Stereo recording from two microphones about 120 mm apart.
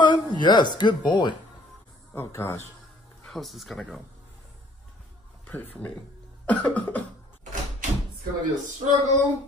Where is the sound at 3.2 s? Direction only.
5° left (ahead or behind).